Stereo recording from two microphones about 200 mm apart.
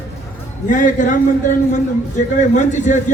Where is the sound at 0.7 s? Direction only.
40° left (ahead or behind).